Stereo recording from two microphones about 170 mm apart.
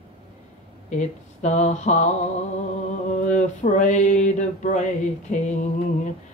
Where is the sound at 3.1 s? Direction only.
45° left (ahead or behind).